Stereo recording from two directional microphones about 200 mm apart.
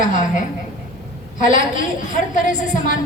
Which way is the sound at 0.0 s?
40° left (ahead or behind).